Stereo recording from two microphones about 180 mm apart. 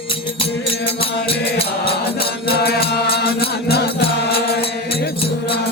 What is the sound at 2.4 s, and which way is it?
Music, 60° left (ahead or behind).